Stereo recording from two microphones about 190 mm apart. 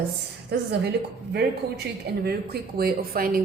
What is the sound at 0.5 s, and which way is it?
Speech, 60° right (ahead or behind).